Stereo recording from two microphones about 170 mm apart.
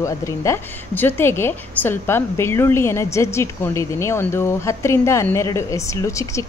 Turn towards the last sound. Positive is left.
turn(degrees=15)  # may be behind; listen again after turning